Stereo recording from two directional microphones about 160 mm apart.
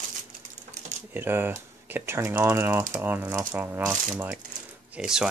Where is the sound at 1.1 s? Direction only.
15° right (ahead or behind).